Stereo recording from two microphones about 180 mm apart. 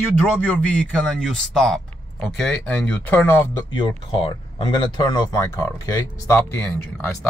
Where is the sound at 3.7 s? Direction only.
30° left (ahead or behind); by 7.2 s 5° left (ahead or behind).